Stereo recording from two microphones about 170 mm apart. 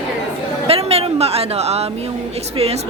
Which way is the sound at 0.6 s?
35° right (ahead or behind).